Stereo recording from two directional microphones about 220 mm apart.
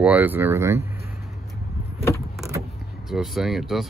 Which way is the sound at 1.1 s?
Centre (ahead or behind).